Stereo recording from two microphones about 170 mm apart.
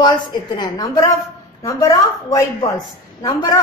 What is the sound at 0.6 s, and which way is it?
Speech, 20° left (ahead or behind).